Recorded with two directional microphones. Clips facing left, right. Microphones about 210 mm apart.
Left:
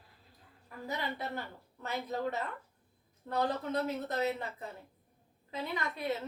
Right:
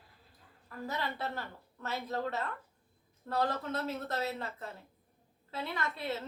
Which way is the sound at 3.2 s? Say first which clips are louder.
Even; 15° left (ahead or behind).